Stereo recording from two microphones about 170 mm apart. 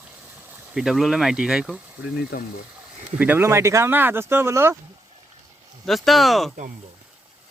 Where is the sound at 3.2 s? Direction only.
15° right (ahead or behind).